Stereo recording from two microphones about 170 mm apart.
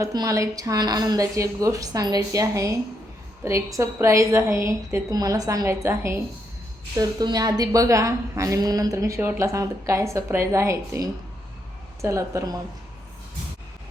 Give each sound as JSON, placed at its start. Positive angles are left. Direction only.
{"t": 0.0, "sound": "a woman's voice", "side_deg": -20}